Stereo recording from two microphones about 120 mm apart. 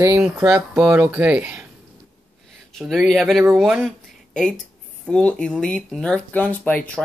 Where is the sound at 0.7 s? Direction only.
15° right (ahead or behind).